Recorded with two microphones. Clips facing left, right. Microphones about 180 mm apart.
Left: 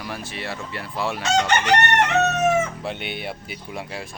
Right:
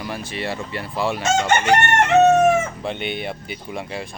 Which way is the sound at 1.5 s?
45° right (ahead or behind).